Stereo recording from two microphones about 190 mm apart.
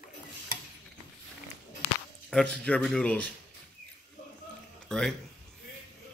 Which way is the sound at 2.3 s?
5° left (ahead or behind).